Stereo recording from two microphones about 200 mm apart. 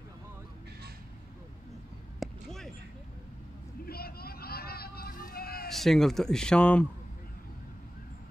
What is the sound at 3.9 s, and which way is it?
Vehicle, 50° left (ahead or behind).